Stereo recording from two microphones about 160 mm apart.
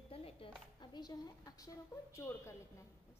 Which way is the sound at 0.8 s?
25° left (ahead or behind).